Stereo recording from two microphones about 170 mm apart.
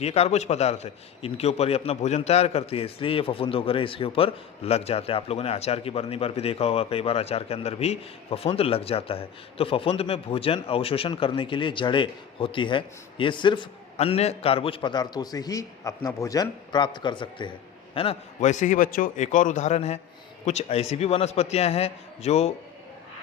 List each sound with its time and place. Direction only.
0.0 s a man's voice: 40° left (ahead or behind)
18.3 s a man's voice: 45° left (ahead or behind)